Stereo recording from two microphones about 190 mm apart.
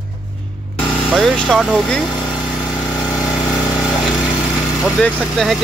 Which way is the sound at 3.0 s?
15° left (ahead or behind).